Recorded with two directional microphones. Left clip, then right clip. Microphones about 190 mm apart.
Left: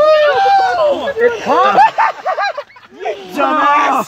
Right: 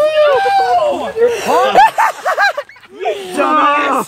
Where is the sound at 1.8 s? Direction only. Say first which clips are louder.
Right 1 dB; 45° right (ahead or behind).